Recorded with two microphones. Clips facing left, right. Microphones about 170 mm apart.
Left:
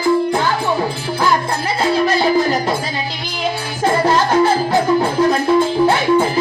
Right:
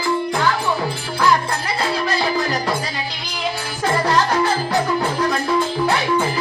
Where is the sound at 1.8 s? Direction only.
25° left (ahead or behind).